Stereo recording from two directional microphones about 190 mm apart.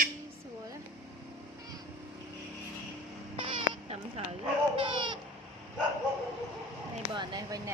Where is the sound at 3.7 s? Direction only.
30° right (ahead or behind).